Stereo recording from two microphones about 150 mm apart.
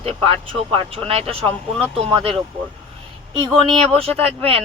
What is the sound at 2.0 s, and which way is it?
Speech, 35° right (ahead or behind).